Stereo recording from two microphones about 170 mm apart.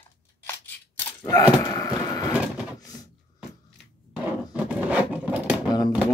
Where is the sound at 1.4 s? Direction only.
20° left (ahead or behind).